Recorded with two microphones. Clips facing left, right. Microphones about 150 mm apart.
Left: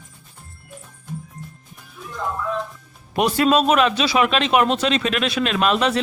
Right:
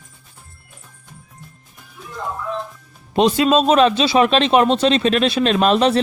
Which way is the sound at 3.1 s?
20° right (ahead or behind).